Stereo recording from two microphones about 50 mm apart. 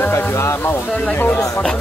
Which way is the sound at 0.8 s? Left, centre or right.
Left.